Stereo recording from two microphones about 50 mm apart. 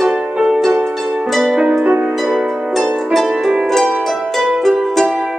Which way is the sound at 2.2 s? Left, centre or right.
Centre.